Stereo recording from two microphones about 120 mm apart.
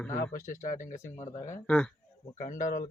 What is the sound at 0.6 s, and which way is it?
Speech, 90° left.